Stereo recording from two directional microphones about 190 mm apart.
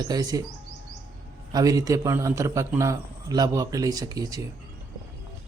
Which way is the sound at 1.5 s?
20° right (ahead or behind).